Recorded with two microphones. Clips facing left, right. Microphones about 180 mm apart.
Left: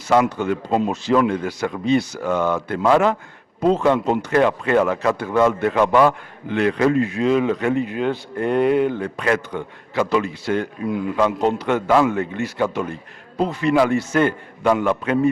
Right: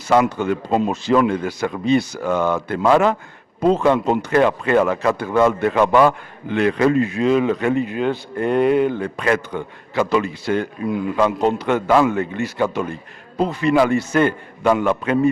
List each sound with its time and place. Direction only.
0.1 s a man's voice: 15° right (ahead or behind)